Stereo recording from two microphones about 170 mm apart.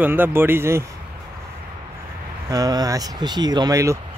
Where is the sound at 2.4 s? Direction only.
20° right (ahead or behind).